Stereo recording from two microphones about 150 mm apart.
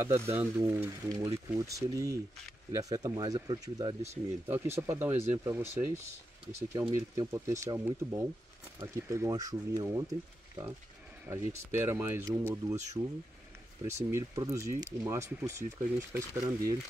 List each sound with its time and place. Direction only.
0.0 s speech: 15° right (ahead or behind)
11.2 s speech: 15° right (ahead or behind)
13.0 s speech: 25° right (ahead or behind)